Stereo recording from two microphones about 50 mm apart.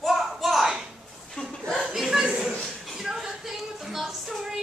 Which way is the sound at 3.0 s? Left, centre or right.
Centre.